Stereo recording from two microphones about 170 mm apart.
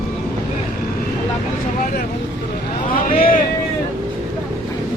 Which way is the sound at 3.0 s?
55° left (ahead or behind).